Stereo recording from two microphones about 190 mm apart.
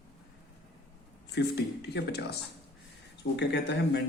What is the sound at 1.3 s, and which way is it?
Speech, 60° left (ahead or behind).